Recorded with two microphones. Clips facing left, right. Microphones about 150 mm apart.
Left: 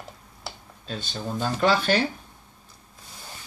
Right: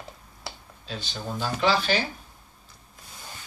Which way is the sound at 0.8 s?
50° left (ahead or behind).